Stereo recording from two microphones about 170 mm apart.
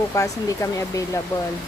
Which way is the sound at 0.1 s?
20° left (ahead or behind).